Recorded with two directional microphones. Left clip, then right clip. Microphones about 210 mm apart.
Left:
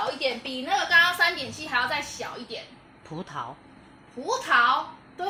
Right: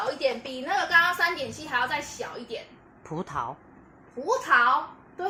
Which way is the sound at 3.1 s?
25° right (ahead or behind).